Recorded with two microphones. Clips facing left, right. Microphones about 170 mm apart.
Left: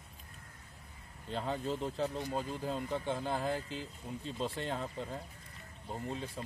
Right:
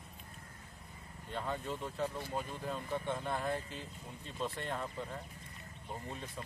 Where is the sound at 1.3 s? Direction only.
30° left (ahead or behind).